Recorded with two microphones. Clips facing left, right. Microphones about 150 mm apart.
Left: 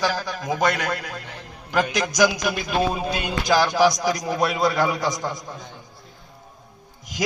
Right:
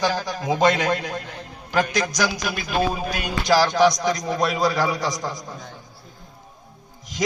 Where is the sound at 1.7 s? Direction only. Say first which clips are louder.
Left 1 dB; 15° left (ahead or behind).